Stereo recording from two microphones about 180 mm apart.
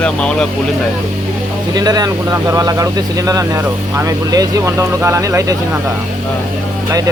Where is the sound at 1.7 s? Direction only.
20° right (ahead or behind).